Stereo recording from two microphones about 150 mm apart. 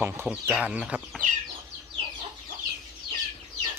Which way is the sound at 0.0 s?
10° right (ahead or behind).